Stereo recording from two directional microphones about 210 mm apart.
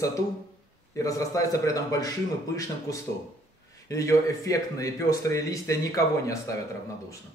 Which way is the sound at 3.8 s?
15° left (ahead or behind).